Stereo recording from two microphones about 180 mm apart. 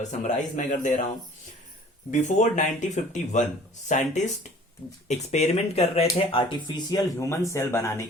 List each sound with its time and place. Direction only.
0.2 s a man's voice: 45° left (ahead or behind)
2.0 s a man's voice: 40° left (ahead or behind)
6.3 s speech: 25° left (ahead or behind)